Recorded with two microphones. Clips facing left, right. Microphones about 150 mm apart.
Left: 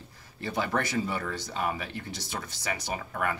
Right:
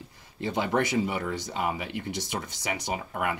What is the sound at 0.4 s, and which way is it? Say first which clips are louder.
Speech: right 3 dB; 20° right (ahead or behind).